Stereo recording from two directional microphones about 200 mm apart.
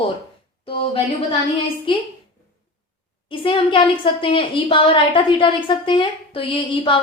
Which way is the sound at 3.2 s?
25° left (ahead or behind).